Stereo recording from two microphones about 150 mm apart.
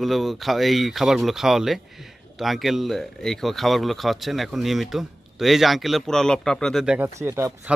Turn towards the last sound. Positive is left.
turn(degrees=-15)  # may be behind; listen again after turning